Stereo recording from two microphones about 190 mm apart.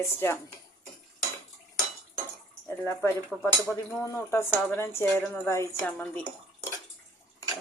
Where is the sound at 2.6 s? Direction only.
10° left (ahead or behind).